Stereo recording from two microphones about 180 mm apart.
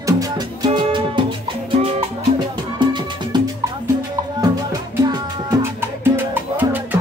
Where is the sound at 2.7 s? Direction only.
25° right (ahead or behind).